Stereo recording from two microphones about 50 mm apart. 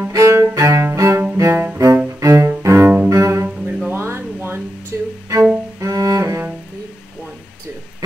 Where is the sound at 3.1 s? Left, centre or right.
Right.